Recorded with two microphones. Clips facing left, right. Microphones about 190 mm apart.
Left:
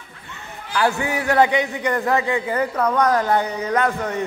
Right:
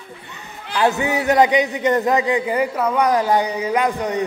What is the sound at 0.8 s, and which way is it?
A man's voice, 20° right (ahead or behind).